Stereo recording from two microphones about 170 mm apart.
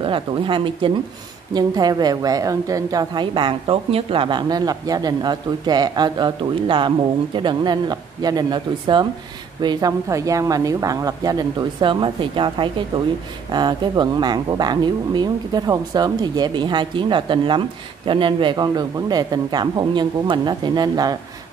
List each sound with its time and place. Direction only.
0.0 s speech: 30° right (ahead or behind)